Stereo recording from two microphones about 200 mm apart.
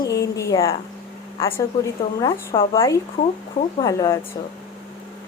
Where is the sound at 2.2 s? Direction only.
25° left (ahead or behind).